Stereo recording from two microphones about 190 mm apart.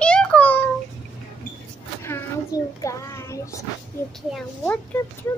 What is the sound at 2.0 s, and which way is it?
A child's voice, 15° left (ahead or behind).